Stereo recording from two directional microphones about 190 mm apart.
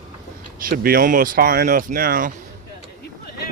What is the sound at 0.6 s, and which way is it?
Speech, 50° right (ahead or behind).